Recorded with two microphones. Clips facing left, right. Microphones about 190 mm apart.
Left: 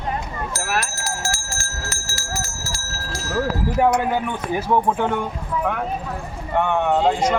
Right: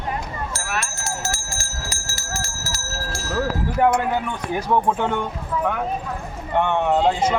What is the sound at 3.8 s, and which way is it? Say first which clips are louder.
Speech: even; 10° left (ahead or behind).